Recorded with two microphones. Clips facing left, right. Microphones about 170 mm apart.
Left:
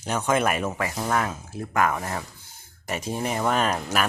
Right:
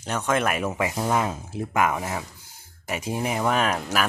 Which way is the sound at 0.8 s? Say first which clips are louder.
Right 2 dB; 15° right (ahead or behind).